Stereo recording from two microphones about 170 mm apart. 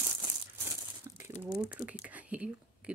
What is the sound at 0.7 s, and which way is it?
Tearing, 15° right (ahead or behind).